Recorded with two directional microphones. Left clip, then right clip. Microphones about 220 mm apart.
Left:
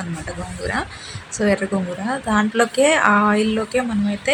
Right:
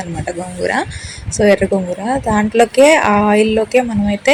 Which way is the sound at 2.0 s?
10° right (ahead or behind).